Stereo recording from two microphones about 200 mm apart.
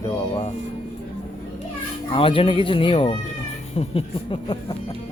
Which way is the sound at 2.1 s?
25° left (ahead or behind).